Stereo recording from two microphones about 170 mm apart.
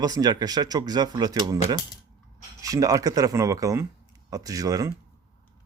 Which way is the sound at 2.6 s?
20° right (ahead or behind).